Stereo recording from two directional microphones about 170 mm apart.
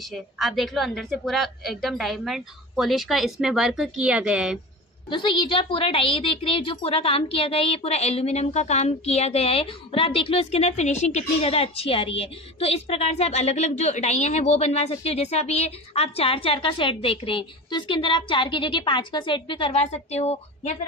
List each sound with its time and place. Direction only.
0.1 s a woman's voice: centre (ahead or behind)
5.1 s a woman's voice: 25° left (ahead or behind)